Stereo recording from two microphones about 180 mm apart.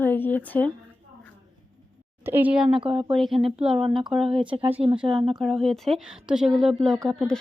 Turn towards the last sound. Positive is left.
turn(degrees=5)  # may be behind; listen again after turning